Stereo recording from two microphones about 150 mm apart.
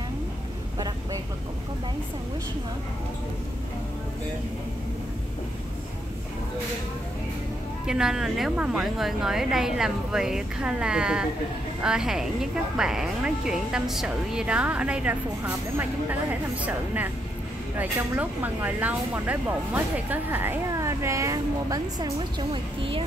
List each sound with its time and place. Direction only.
0.7 s vehicle: 25° right (ahead or behind)
7.8 s a woman's voice: 5° right (ahead or behind); by 23.0 s 35° right (ahead or behind)